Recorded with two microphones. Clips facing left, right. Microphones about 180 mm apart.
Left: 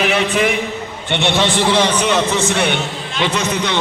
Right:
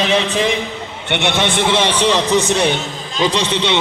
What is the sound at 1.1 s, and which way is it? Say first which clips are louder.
A man's voice: left 1 dB; 20° right (ahead or behind).